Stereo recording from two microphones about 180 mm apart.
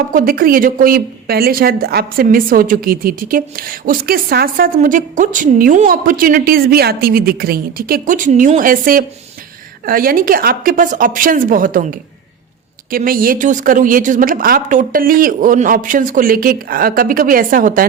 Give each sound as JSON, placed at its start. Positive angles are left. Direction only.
{"t": 0.1, "sound": "a woman's voice", "side_deg": -50}